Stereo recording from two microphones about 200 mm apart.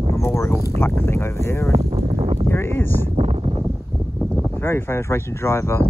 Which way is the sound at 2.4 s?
10° left (ahead or behind).